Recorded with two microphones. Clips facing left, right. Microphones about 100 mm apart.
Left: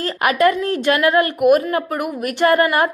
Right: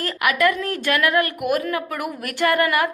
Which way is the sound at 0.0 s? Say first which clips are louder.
Left 4 dB; 30° left (ahead or behind).